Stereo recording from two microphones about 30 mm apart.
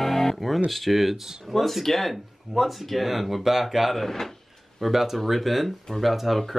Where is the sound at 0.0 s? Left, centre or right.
Centre.